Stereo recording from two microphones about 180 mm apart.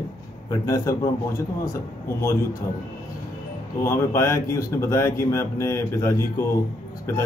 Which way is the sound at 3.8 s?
15° left (ahead or behind).